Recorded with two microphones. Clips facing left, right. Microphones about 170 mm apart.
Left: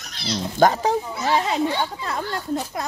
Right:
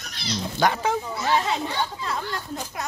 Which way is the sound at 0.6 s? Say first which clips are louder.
Left 5 dB; 40° left (ahead or behind).